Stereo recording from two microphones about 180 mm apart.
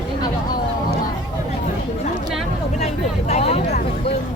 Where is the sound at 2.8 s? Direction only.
35° left (ahead or behind).